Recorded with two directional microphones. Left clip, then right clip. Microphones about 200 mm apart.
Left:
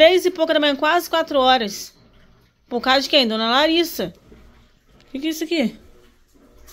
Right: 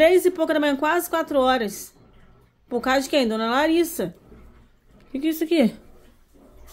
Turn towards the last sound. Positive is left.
turn(degrees=-20)  # may be behind; listen again after turning